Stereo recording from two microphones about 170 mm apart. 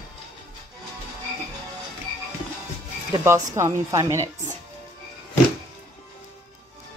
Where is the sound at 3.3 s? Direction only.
15° right (ahead or behind).